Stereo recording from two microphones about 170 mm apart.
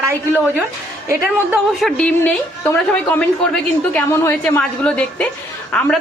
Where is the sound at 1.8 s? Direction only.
5° left (ahead or behind).